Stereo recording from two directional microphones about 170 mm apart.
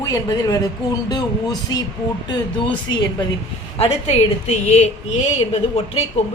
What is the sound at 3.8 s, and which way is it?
A woman's voice, 35° left (ahead or behind).